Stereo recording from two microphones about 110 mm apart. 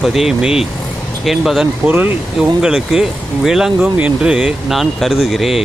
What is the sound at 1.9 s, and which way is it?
Speech, 15° right (ahead or behind).